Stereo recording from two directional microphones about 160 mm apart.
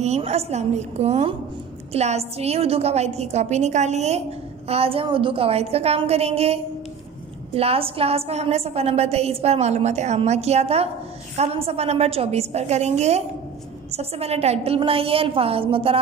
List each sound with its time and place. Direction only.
0.0 s a woman's voice: 45° right (ahead or behind)